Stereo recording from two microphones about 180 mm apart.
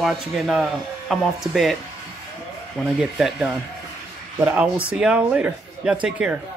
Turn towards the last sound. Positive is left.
turn(degrees=-5)  # may be behind; listen again after turning